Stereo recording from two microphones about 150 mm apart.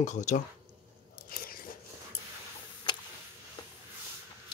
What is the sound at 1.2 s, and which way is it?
Biting, 75° left (ahead or behind).